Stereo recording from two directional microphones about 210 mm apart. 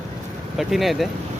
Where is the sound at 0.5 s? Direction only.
Centre (ahead or behind).